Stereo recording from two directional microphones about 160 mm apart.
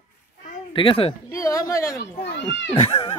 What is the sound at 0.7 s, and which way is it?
Speech, 35° left (ahead or behind).